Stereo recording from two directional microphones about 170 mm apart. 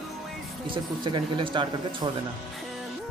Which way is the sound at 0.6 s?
30° right (ahead or behind).